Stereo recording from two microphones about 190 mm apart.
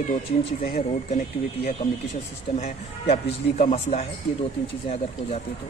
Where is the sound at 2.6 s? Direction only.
35° left (ahead or behind).